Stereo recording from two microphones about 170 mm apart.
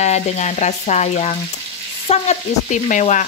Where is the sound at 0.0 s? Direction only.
40° left (ahead or behind).